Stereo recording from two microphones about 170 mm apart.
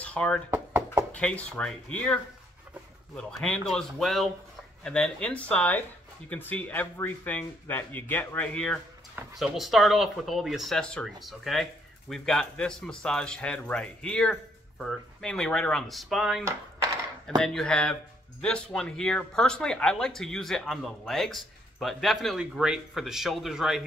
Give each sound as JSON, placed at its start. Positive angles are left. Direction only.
{"t": 0.0, "sound": "knock", "side_deg": 5}
{"t": 1.1, "sound": "speech", "side_deg": 5}
{"t": 3.2, "sound": "speech", "side_deg": 5}
{"t": 16.4, "sound": "a sound", "side_deg": -20}
{"t": 17.4, "sound": "speech", "side_deg": 5}